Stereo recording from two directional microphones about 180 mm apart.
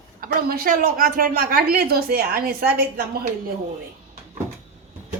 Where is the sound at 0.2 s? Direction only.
55° right (ahead or behind).